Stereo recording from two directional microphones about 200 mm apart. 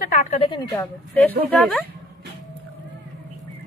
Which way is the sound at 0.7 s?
15° left (ahead or behind).